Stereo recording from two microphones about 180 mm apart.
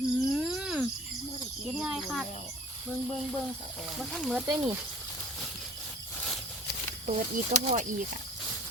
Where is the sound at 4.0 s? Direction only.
Centre (ahead or behind).